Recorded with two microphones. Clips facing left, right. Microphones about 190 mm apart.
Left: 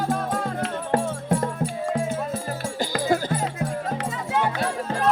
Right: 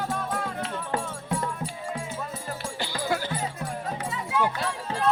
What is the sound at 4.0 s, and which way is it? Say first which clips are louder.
Music: even; 85° left.